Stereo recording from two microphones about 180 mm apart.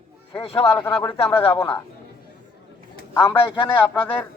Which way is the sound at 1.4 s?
30° left (ahead or behind).